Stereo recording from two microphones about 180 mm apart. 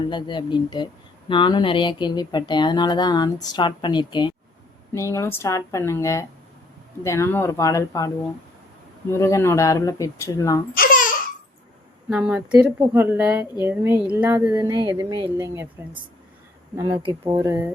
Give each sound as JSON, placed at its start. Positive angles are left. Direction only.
{"t": 0.1, "sound": "speech", "side_deg": 25}
{"t": 10.8, "sound": "babbling", "side_deg": 50}
{"t": 12.0, "sound": "a woman's voice", "side_deg": -5}
{"t": 16.7, "sound": "a woman's voice", "side_deg": -15}